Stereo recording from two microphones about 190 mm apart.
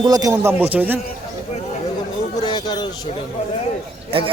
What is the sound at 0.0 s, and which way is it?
Speech, 20° right (ahead or behind).